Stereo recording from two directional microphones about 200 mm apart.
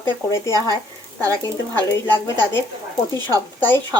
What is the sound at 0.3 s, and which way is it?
Speech, 15° left (ahead or behind).